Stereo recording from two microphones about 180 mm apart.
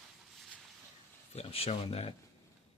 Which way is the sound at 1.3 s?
35° left (ahead or behind).